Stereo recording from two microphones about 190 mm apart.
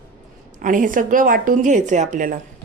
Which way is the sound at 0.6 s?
45° right (ahead or behind).